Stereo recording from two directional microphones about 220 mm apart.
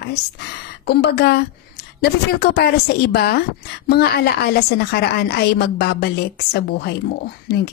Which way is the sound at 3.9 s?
45° left (ahead or behind).